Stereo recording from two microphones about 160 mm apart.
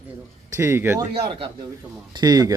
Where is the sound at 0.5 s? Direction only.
15° right (ahead or behind).